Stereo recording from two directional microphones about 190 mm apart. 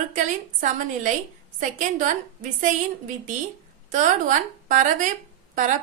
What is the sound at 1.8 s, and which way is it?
Speech, 45° right (ahead or behind).